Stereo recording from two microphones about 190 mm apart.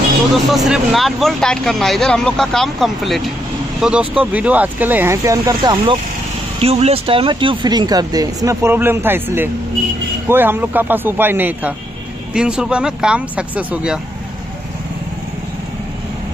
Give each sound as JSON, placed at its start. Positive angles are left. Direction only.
{"t": 0.3, "sound": "speech", "side_deg": 0}